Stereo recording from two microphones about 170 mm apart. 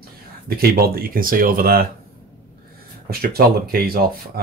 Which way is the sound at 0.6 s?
60° right (ahead or behind).